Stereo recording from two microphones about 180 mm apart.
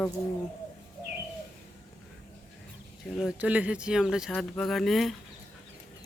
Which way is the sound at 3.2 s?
5° right (ahead or behind).